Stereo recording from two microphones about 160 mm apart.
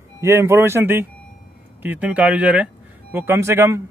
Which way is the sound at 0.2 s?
15° right (ahead or behind).